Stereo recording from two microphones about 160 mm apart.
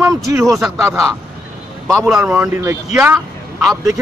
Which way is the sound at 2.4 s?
15° right (ahead or behind).